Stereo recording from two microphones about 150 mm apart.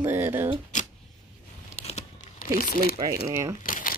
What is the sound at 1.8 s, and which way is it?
Crumpling, 55° left (ahead or behind).